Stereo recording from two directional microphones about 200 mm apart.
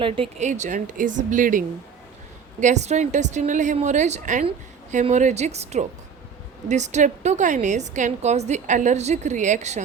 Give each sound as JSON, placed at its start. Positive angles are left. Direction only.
{"t": 0.0, "sound": "a woman's voice", "side_deg": -30}